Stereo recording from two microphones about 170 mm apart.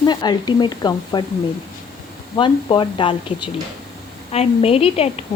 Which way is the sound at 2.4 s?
30° left (ahead or behind).